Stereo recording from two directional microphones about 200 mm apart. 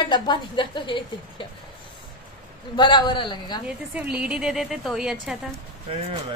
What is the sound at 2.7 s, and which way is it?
Speech, 20° left (ahead or behind).